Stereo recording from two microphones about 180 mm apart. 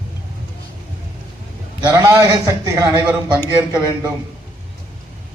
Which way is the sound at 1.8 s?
15° right (ahead or behind).